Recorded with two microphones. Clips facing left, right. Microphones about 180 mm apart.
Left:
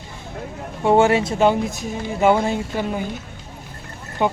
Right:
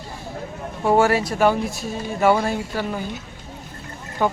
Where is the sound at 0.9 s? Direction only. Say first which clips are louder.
Left 2 dB; 25° left (ahead or behind).